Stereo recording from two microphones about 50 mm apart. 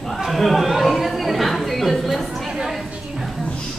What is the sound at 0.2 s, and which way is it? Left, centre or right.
Chatter, centre.